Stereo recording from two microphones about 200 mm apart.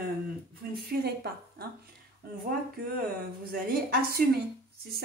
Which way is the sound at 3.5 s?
50° right (ahead or behind).